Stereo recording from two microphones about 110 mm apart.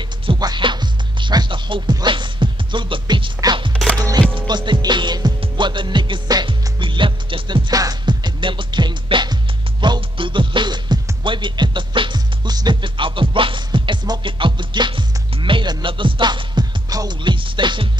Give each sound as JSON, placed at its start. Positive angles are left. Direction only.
{"t": 0.3, "sound": "music", "side_deg": -45}
{"t": 3.7, "sound": "music", "side_deg": 5}
{"t": 4.5, "sound": "music", "side_deg": -40}